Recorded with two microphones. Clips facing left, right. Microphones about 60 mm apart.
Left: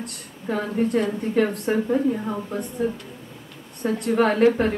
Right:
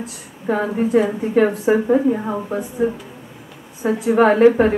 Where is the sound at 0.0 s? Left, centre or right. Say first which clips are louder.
Right 6 dB; centre.